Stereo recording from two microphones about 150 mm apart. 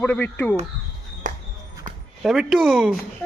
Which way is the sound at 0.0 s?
10° left (ahead or behind).